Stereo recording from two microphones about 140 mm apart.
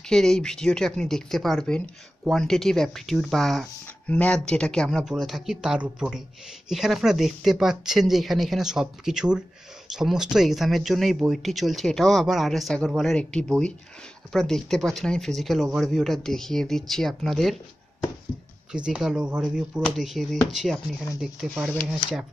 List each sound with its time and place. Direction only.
0.1 s speech: 5° left (ahead or behind)
18.7 s speech: 5° right (ahead or behind)
21.2 s speech: 10° right (ahead or behind)